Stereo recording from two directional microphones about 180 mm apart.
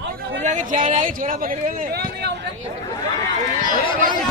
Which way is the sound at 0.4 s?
40° right (ahead or behind).